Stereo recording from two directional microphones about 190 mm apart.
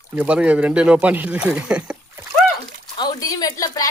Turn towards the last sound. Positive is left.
turn(degrees=20)  # may be behind; listen again after turning